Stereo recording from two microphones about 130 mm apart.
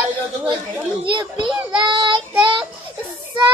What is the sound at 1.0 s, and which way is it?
Child singing, 40° right (ahead or behind).